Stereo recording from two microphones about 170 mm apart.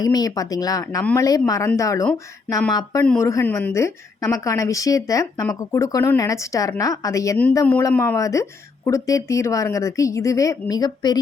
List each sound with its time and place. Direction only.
0.0 s a woman's voice: 20° left (ahead or behind)